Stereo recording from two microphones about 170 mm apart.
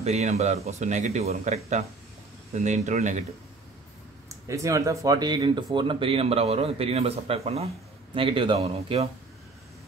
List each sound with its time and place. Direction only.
0.0 s speech: 40° right (ahead or behind)
4.5 s speech: 20° right (ahead or behind); by 9.1 s 35° right (ahead or behind)